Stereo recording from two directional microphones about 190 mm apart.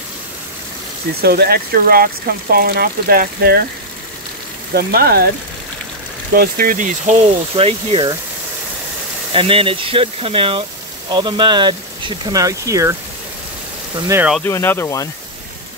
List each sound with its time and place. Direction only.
1.2 s speech: 55° right (ahead or behind)
4.7 s speech: 55° right (ahead or behind)
6.3 s speech: 50° right (ahead or behind)
7.5 s speech: 30° right (ahead or behind)
9.3 s speech: 30° right (ahead or behind)
13.9 s speech: 15° right (ahead or behind)
14.4 s speech: 10° left (ahead or behind)